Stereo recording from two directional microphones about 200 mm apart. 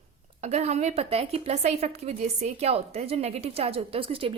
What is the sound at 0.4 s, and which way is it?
A woman's voice, 35° right (ahead or behind).